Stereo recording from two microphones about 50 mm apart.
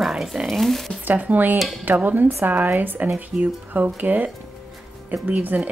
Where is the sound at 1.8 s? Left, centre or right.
Right.